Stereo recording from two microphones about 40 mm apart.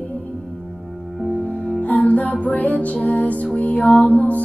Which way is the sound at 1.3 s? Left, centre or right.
Left.